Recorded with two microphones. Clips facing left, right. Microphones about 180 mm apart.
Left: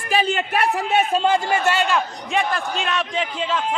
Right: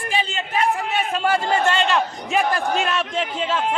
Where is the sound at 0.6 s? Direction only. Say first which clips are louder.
Left 1 dB; 55° left (ahead or behind).